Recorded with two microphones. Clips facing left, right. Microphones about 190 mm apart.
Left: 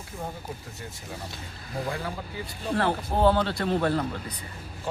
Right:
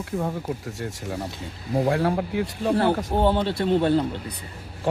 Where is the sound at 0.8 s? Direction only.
70° right (ahead or behind).